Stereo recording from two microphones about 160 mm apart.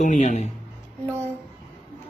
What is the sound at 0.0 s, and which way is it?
Speech, 50° left (ahead or behind).